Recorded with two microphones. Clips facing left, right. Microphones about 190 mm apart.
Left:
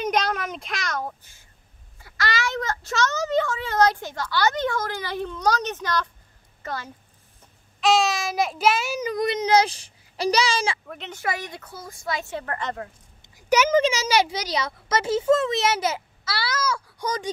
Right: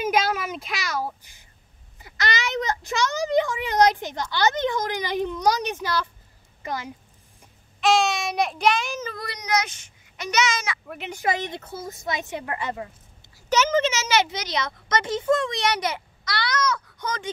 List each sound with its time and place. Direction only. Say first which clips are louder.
0.0 s a woman's voice: right 1 dB; 5° right (ahead or behind)
7.8 s a child's voice: even; centre (ahead or behind); by 10.8 s 30° left (ahead or behind)
10.9 s a woman's voice: right 3 dB; 10° right (ahead or behind)
13.2 s speech: left 2 dB; 10° left (ahead or behind)
15.6 s a child's voice: left 1 dB; 25° left (ahead or behind)
16.3 s baby cry: right 1 dB; 5° left (ahead or behind)
16.6 s a sound: even; 10° left (ahead or behind)